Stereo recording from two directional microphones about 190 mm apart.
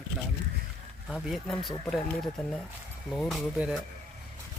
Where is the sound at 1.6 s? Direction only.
25° left (ahead or behind).